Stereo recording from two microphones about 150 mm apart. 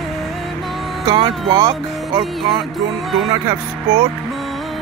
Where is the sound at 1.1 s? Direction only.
30° right (ahead or behind).